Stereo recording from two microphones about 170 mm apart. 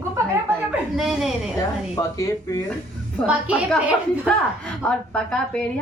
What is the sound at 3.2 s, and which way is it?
Speech, 5° right (ahead or behind).